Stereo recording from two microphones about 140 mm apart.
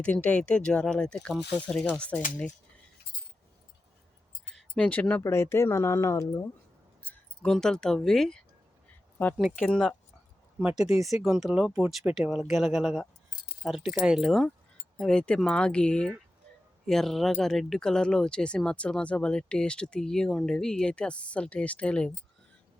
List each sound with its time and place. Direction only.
0.0 s speech: 10° left (ahead or behind)
4.5 s speech: 10° left (ahead or behind)
7.0 s speech: 5° left (ahead or behind)
9.6 s speech: 5° left (ahead or behind)
10.6 s speech: 5° right (ahead or behind)